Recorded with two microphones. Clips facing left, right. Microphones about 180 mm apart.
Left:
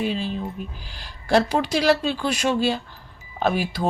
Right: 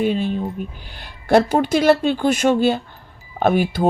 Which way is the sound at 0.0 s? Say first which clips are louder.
Right 6 dB; 50° right (ahead or behind).